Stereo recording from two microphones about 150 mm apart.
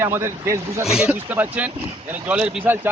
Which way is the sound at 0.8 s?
5° right (ahead or behind).